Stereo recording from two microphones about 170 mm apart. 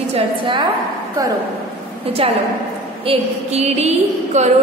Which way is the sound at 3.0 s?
40° right (ahead or behind).